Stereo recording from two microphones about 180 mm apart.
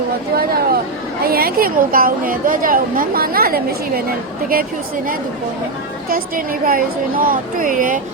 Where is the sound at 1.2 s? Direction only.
55° right (ahead or behind).